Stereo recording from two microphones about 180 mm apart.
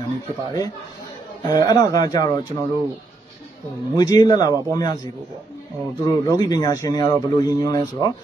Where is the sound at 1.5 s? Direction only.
20° left (ahead or behind).